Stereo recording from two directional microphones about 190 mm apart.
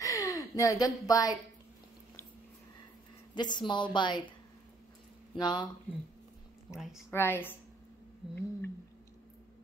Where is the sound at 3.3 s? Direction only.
25° left (ahead or behind).